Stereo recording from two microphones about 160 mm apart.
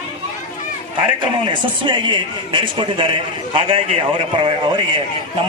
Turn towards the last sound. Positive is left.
turn(degrees=-30)  # may be behind; listen again after turning